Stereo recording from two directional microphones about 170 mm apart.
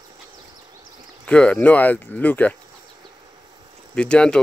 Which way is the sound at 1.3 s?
5° left (ahead or behind).